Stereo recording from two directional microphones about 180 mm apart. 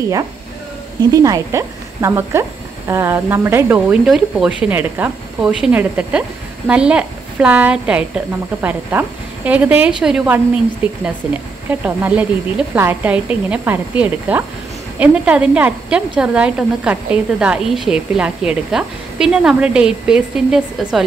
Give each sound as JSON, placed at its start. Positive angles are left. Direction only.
{"t": 1.1, "sound": "speech", "side_deg": -20}